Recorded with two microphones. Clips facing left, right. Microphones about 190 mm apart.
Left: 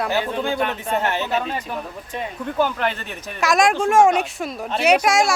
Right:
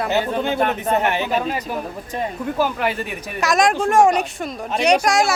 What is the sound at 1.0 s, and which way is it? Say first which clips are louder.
A woman's voice: right 2 dB; 15° right (ahead or behind).